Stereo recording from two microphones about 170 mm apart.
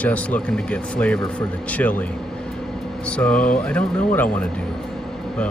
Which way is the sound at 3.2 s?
5° left (ahead or behind).